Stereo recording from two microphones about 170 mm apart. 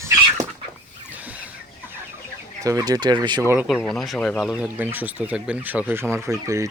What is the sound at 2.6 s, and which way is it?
Speech, 20° right (ahead or behind).